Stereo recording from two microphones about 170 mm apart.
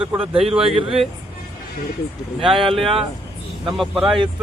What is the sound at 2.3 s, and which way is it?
Speech, centre (ahead or behind).